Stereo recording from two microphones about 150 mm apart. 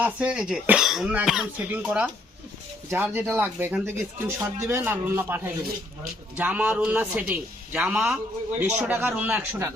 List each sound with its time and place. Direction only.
0.0 s speech: 5° right (ahead or behind)
8.5 s speech: 15° right (ahead or behind)